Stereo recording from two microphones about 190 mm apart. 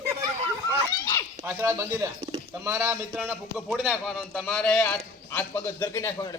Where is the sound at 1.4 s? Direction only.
10° right (ahead or behind).